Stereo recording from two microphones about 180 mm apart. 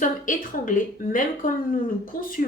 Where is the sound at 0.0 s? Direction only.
45° left (ahead or behind).